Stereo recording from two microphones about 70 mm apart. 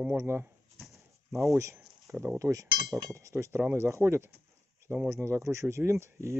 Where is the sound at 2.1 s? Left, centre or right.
Right.